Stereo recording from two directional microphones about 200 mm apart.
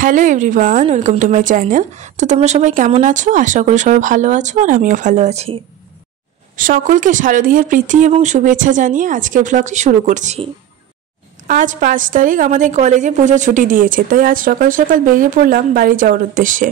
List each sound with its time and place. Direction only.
0.0 s a woman's voice: 40° right (ahead or behind)
6.5 s a woman's voice: 45° right (ahead or behind)